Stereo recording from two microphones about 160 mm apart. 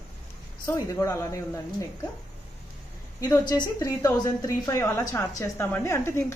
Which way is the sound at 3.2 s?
25° left (ahead or behind).